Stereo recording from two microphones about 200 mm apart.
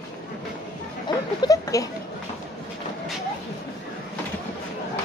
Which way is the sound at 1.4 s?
15° left (ahead or behind).